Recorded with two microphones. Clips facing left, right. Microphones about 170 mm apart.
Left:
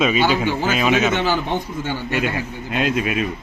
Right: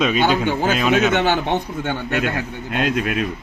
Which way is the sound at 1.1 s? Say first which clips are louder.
Right 2 dB; 65° right (ahead or behind).